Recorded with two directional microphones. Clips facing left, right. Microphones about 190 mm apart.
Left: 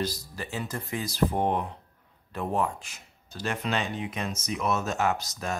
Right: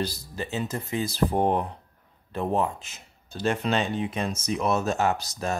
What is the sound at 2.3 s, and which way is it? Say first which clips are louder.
Speech: right 3 dB; 25° right (ahead or behind).